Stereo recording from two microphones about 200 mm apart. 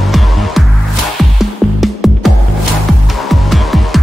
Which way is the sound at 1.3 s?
Centre (ahead or behind).